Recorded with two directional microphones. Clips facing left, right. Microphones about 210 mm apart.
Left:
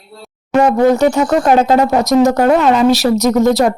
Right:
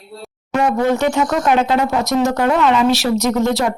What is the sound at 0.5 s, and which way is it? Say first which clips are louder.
Speech: left 5 dB; 40° left (ahead or behind).